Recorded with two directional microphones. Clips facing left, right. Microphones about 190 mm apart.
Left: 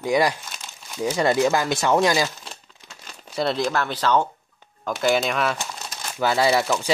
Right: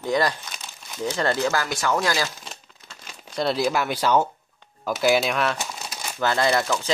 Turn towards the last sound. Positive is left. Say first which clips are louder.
# left 2 dB
turn(degrees=10)  # may be behind; listen again after turning